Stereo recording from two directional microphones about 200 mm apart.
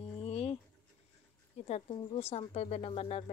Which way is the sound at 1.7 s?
30° left (ahead or behind).